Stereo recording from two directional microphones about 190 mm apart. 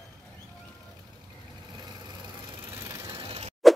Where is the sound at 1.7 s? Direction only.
20° right (ahead or behind).